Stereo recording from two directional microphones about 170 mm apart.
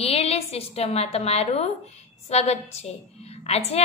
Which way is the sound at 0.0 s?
35° left (ahead or behind).